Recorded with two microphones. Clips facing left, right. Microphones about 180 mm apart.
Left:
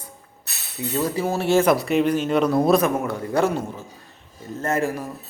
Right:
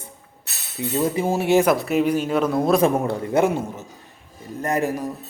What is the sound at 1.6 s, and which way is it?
Speech, centre (ahead or behind).